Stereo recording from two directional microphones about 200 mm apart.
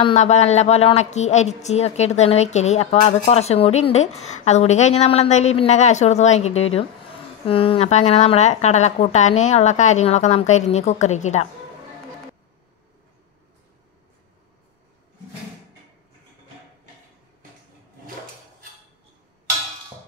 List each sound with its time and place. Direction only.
0.0 s speech: 35° left (ahead or behind)